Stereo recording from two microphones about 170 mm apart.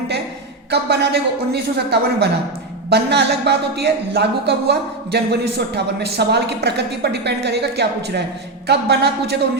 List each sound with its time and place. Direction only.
0.7 s speech: 75° right (ahead or behind)